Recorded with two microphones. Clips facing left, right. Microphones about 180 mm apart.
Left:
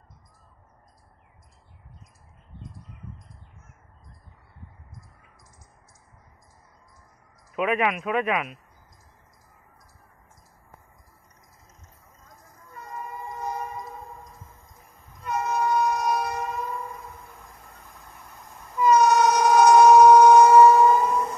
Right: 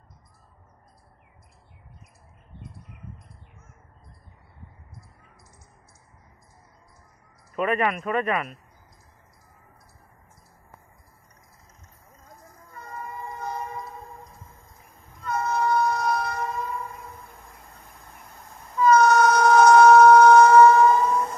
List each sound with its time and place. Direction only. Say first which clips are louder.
7.5 s speech: even; 5° left (ahead or behind)
12.9 s train: even; 15° left (ahead or behind)
15.2 s train: right 1 dB; 15° left (ahead or behind)
18.8 s train: right 1 dB; 15° left (ahead or behind)